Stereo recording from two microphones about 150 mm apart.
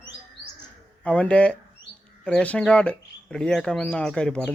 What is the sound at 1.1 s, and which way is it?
Speech, 10° left (ahead or behind).